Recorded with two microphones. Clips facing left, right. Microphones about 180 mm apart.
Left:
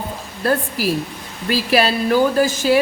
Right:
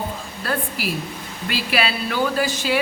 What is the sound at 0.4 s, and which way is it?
A woman's voice, 40° left (ahead or behind).